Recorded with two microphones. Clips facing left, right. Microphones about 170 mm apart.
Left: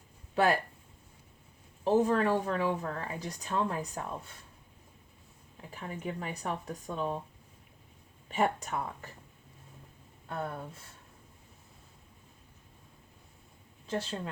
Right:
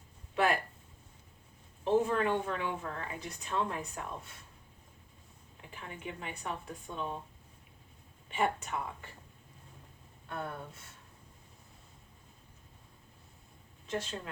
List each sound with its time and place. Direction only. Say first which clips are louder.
0.3 s speech: left 3 dB; 35° left (ahead or behind)
2.0 s speech: left 3 dB; 35° left (ahead or behind)
5.7 s speech: left 5 dB; 40° left (ahead or behind)
8.3 s speech: left 3 dB; 40° left (ahead or behind)
10.2 s speech: left 3 dB; 30° left (ahead or behind)
13.8 s a woman's voice: left 2 dB; 30° left (ahead or behind)